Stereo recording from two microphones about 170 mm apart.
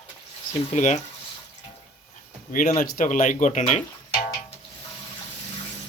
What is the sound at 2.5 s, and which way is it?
Speech, 50° left (ahead or behind).